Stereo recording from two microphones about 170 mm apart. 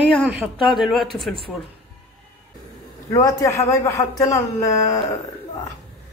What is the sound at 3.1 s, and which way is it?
A man's voice, 20° left (ahead or behind).